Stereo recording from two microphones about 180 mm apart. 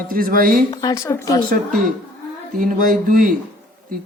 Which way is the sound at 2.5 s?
50° right (ahead or behind).